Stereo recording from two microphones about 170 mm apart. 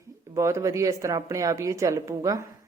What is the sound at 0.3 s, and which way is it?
A woman's voice, 15° right (ahead or behind).